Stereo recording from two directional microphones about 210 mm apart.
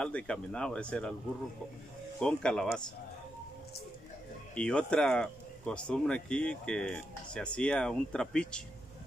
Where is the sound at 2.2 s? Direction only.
5° left (ahead or behind).